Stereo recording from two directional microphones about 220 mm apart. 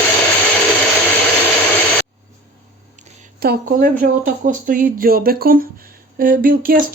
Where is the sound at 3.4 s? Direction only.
40° right (ahead or behind).